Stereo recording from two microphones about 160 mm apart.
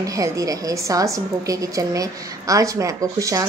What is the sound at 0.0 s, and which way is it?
A woman's voice, 20° right (ahead or behind).